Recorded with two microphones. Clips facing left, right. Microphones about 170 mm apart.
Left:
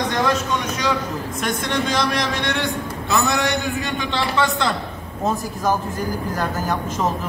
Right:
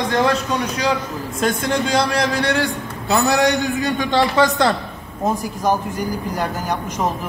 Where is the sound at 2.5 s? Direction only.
35° right (ahead or behind).